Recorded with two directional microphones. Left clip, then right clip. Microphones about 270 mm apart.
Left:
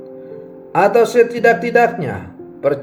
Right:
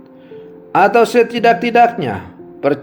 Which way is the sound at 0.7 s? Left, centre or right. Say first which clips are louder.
Right 1 dB; right.